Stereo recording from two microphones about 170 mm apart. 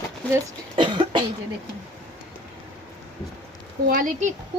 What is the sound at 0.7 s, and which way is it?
Cough, 30° right (ahead or behind).